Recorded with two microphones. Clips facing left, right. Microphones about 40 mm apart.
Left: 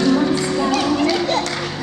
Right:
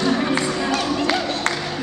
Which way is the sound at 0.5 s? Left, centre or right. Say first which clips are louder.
Left 4 dB; centre.